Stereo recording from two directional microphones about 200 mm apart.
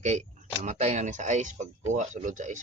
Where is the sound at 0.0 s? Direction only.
35° right (ahead or behind).